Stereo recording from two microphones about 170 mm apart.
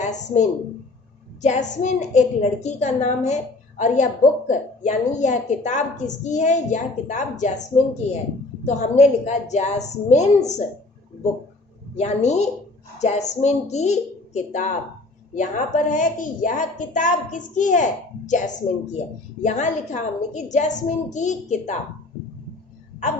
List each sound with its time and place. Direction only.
0.0 s a sound: 45° left (ahead or behind)
1.4 s a woman's voice: 45° left (ahead or behind)
8.6 s a woman's voice: 40° left (ahead or behind)
11.9 s a woman's voice: 40° left (ahead or behind)